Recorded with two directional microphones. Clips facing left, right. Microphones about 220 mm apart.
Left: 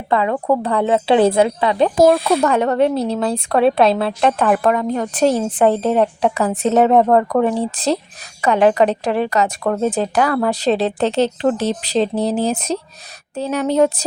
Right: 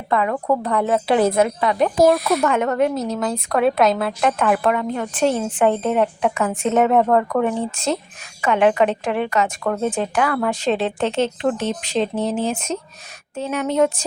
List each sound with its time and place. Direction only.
0.1 s a woman's voice: 30° left (ahead or behind)